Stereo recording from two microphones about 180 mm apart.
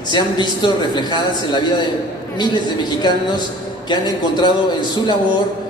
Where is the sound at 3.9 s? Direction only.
25° left (ahead or behind).